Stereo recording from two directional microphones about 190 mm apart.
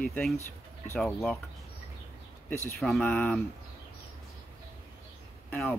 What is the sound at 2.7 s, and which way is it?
Speech, centre (ahead or behind).